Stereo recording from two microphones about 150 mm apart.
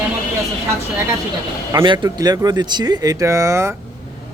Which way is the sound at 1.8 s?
30° right (ahead or behind).